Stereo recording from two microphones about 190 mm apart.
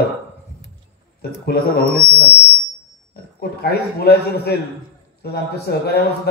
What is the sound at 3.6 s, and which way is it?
Speech, 55° left (ahead or behind).